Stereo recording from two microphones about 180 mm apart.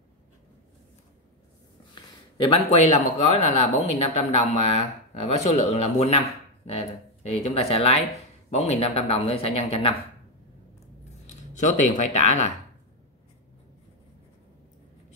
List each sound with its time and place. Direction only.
2.0 s speech: 30° left (ahead or behind)
11.2 s speech: 45° left (ahead or behind)